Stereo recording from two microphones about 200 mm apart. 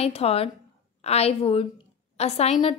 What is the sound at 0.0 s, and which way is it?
A woman's voice, 30° left (ahead or behind).